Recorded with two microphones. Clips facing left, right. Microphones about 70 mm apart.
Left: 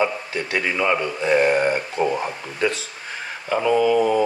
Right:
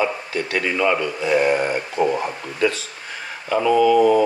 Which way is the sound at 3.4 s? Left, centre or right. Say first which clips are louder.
Right 2 dB; left.